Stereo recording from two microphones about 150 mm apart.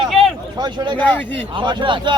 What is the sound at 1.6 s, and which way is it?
Speech, 35° right (ahead or behind).